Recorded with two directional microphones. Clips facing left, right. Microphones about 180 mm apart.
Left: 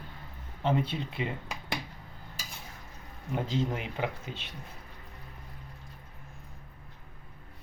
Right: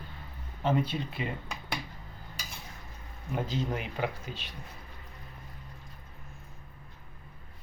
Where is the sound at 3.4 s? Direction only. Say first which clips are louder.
Left 2 dB; 25° left (ahead or behind).